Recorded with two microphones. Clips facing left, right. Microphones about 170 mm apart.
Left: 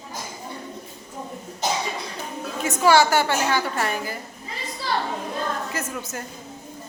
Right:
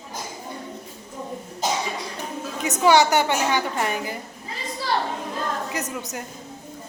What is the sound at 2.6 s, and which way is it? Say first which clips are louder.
A woman's voice: even; 20° right (ahead or behind).